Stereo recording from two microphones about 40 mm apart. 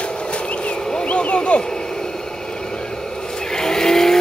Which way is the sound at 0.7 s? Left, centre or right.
Centre.